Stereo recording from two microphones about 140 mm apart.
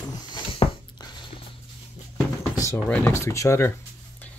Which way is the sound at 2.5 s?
20° left (ahead or behind).